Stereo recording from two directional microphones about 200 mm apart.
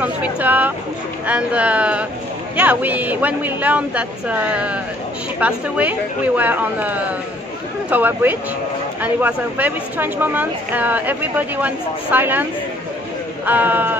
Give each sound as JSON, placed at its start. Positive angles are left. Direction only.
{"t": 0.0, "sound": "speech", "side_deg": -10}
{"t": 13.5, "sound": "speech", "side_deg": -10}